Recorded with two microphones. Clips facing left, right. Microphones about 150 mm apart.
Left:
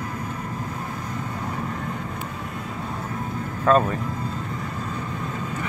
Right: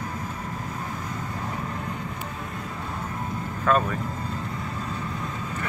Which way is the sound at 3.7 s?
30° left (ahead or behind).